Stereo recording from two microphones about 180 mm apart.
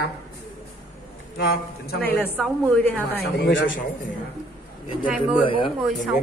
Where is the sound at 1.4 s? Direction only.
60° left (ahead or behind).